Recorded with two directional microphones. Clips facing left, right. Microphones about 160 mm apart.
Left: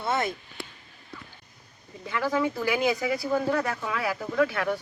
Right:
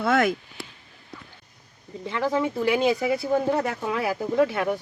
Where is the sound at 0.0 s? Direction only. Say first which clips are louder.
Right 6 dB; 90° right.